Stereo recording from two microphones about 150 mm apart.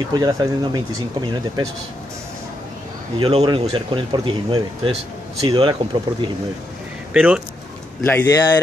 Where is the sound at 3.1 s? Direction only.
35° right (ahead or behind).